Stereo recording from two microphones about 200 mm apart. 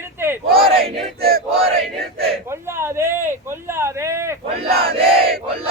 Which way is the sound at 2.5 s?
15° right (ahead or behind).